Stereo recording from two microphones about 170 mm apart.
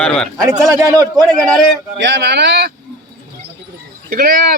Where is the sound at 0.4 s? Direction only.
20° right (ahead or behind).